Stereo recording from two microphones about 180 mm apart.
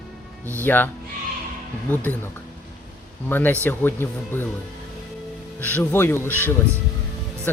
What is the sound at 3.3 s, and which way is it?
Speech, 10° left (ahead or behind).